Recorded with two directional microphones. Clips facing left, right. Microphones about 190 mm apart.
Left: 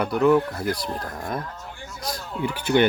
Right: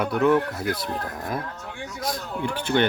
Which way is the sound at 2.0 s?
Centre (ahead or behind).